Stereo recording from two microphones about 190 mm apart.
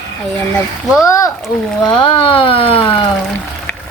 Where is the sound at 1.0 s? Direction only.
15° left (ahead or behind).